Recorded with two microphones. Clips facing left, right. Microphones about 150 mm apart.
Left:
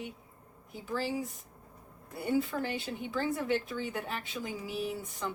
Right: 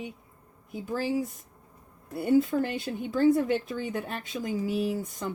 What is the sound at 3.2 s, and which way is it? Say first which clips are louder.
Speech: right 10 dB; 45° right (ahead or behind).